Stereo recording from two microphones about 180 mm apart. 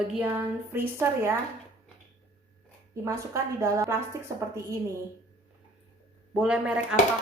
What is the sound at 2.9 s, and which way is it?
A woman's voice, 15° right (ahead or behind).